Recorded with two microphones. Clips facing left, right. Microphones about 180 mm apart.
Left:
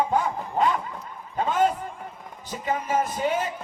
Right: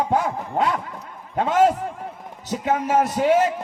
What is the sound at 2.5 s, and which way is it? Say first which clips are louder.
A man's voice: right 5 dB; 75° right (ahead or behind).